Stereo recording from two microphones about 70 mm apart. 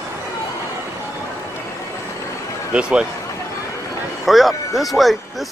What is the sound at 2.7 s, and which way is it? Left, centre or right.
Speech, centre.